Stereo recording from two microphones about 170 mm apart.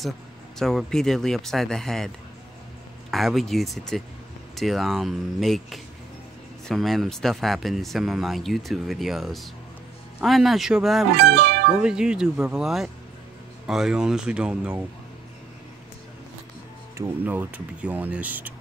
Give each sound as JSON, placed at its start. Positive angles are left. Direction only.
{"t": 0.6, "sound": "speech", "side_deg": 0}
{"t": 3.1, "sound": "speech", "side_deg": 0}
{"t": 11.1, "sound": "speech", "side_deg": -75}
{"t": 11.8, "sound": "speech", "side_deg": -5}
{"t": 16.9, "sound": "speech", "side_deg": -15}